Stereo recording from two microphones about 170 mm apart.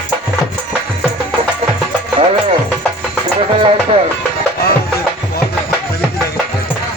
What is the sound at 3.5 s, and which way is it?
Music, 30° right (ahead or behind).